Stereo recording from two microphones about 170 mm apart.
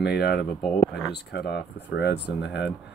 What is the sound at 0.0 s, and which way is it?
Speech, 70° left (ahead or behind).